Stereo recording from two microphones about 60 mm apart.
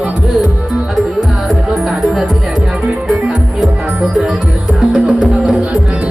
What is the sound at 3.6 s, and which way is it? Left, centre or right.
Music, centre.